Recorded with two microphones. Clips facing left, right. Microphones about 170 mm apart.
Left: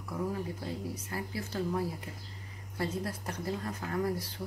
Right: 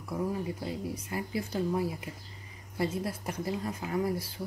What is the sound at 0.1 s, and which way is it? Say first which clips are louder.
Speech: right 2 dB; 10° right (ahead or behind).